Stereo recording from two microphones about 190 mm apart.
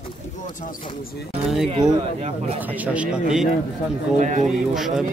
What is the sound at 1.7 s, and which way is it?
Speech, 30° right (ahead or behind).